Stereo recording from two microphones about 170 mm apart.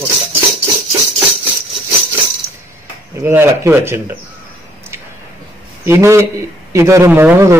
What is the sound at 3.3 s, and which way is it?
Speech, 15° right (ahead or behind).